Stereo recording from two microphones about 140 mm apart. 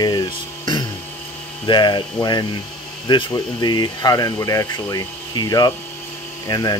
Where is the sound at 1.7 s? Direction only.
35° left (ahead or behind).